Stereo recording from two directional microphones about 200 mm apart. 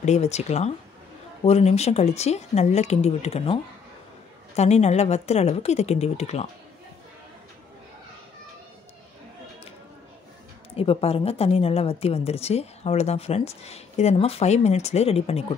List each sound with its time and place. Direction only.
0.0 s a woman's voice: 35° left (ahead or behind)
4.6 s a woman's voice: 35° left (ahead or behind)
10.8 s a woman's voice: 30° left (ahead or behind)